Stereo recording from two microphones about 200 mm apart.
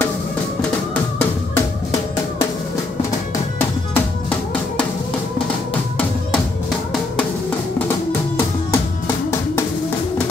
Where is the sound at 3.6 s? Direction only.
10° left (ahead or behind).